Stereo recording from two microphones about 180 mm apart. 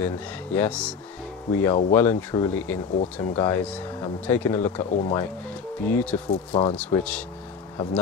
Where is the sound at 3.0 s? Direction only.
35° left (ahead or behind).